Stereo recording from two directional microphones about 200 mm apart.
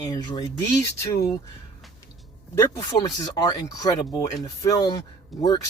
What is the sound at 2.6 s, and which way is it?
Speech, 15° left (ahead or behind).